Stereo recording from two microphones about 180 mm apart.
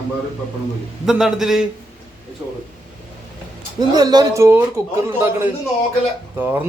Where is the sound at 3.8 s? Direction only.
20° right (ahead or behind).